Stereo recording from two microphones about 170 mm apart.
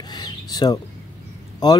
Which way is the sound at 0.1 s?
25° left (ahead or behind).